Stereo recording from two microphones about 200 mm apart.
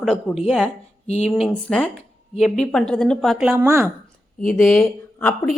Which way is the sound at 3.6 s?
15° right (ahead or behind).